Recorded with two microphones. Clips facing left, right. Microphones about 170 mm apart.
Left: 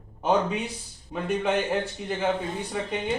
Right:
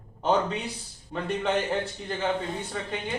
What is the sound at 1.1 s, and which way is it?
A man's voice, 10° left (ahead or behind).